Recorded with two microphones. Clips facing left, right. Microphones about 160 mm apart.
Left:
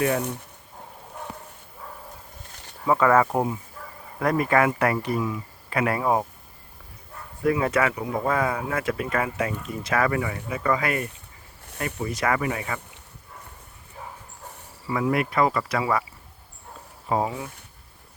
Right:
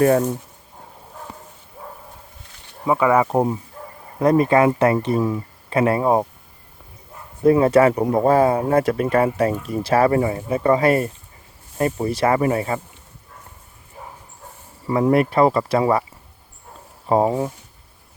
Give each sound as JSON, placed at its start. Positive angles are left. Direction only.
{"t": 2.8, "sound": "speech", "side_deg": -15}
{"t": 7.4, "sound": "speech", "side_deg": -30}
{"t": 14.8, "sound": "speech", "side_deg": -40}
{"t": 17.1, "sound": "speech", "side_deg": -40}